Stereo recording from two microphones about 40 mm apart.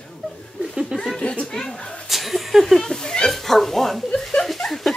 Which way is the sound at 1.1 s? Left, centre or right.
Left.